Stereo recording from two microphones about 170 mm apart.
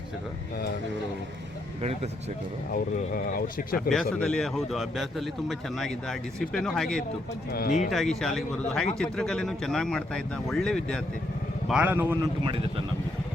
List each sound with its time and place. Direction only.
2.7 s speech: 55° left (ahead or behind)
3.8 s speech: 5° left (ahead or behind)
7.5 s speech: 65° left (ahead or behind)
7.9 s speech: centre (ahead or behind)
11.7 s a man's voice: 10° right (ahead or behind)